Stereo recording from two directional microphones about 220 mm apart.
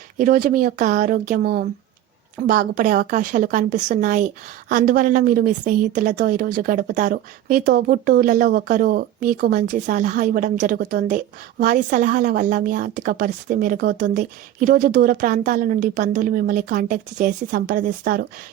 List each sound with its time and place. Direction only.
0.2 s a woman's voice: 40° right (ahead or behind)